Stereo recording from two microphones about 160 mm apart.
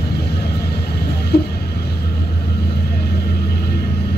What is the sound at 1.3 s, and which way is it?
Music, 85° left.